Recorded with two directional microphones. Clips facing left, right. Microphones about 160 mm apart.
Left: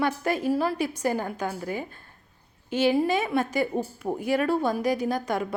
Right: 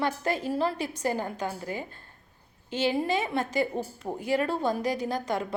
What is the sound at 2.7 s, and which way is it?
A woman's voice, 15° left (ahead or behind).